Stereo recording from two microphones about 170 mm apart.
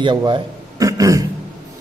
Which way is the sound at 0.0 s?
30° right (ahead or behind).